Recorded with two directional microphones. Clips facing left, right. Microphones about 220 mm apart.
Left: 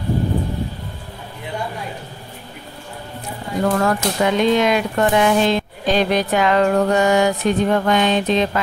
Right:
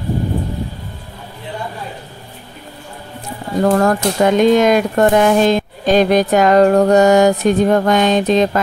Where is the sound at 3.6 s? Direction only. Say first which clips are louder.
Right 5 dB; 40° right (ahead or behind).